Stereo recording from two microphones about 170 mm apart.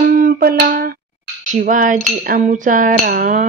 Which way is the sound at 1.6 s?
50° right (ahead or behind).